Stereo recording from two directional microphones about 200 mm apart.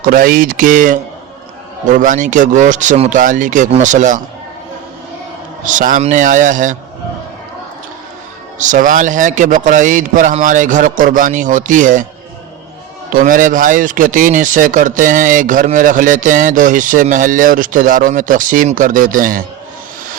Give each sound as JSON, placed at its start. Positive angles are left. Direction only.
{"t": 0.0, "sound": "speech", "side_deg": -45}
{"t": 5.6, "sound": "speech", "side_deg": -40}
{"t": 8.5, "sound": "speech", "side_deg": -40}
{"t": 13.1, "sound": "speech", "side_deg": -40}